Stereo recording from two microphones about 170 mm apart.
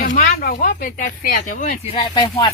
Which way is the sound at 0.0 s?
60° left (ahead or behind).